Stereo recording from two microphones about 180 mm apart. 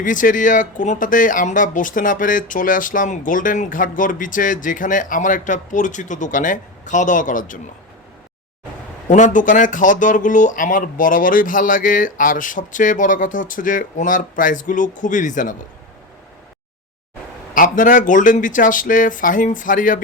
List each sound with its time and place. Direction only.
0.0 s speech: 45° left (ahead or behind)
9.0 s speech: 45° left (ahead or behind)
17.5 s speech: 50° left (ahead or behind)